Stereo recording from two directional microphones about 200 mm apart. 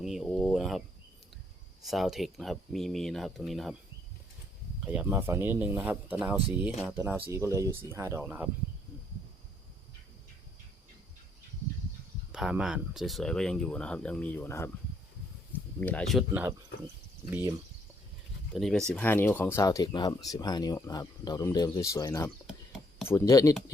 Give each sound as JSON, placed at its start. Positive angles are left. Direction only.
{"t": 0.0, "sound": "speech", "side_deg": 0}
{"t": 1.8, "sound": "speech", "side_deg": 0}
{"t": 4.9, "sound": "speech", "side_deg": -10}
{"t": 12.3, "sound": "speech", "side_deg": -5}
{"t": 15.8, "sound": "speech", "side_deg": 5}
{"t": 18.5, "sound": "speech", "side_deg": 0}
{"t": 22.4, "sound": "chopping", "side_deg": -5}
{"t": 23.0, "sound": "speech", "side_deg": 15}